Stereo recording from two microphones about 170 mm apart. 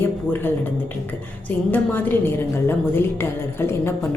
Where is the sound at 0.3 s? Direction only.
15° left (ahead or behind).